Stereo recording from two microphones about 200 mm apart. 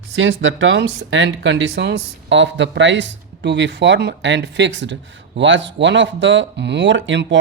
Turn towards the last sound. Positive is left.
turn(degrees=-65)  # may be behind; listen again after turning